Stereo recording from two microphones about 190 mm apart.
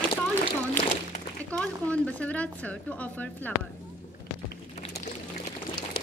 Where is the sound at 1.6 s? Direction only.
5° left (ahead or behind).